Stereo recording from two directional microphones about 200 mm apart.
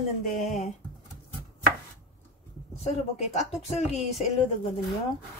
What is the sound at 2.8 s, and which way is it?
A woman's voice, 35° left (ahead or behind).